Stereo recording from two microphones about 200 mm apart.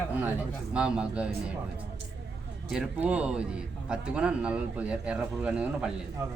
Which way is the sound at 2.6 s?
5° right (ahead or behind).